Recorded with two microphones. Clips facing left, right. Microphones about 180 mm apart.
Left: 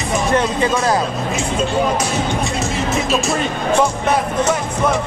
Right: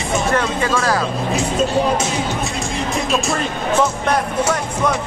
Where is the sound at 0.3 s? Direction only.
20° left (ahead or behind).